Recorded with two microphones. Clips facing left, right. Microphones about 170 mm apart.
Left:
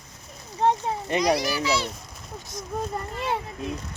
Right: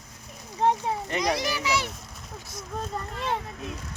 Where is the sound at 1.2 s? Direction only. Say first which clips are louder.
Left 6 dB; 20° right (ahead or behind).